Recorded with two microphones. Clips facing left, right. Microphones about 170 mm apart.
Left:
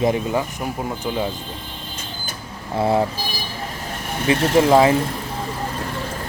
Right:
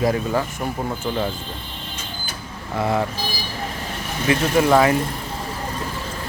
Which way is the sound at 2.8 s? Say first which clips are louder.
Left 3 dB; 25° left (ahead or behind).